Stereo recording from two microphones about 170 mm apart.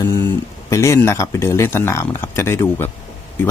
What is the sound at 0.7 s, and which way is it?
Speech, 15° left (ahead or behind).